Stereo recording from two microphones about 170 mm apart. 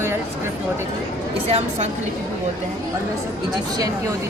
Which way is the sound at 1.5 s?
40° right (ahead or behind).